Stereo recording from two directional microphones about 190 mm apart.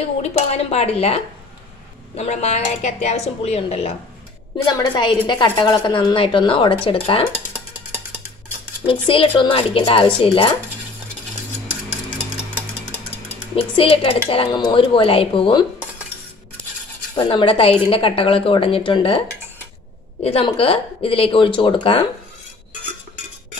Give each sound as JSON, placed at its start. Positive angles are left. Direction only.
{"t": 0.2, "sound": "a woman's voice", "side_deg": 35}
{"t": 8.8, "sound": "a woman's voice", "side_deg": 30}
{"t": 13.6, "sound": "a woman's voice", "side_deg": 30}
{"t": 17.1, "sound": "a woman's voice", "side_deg": 25}
{"t": 20.2, "sound": "a woman's voice", "side_deg": 30}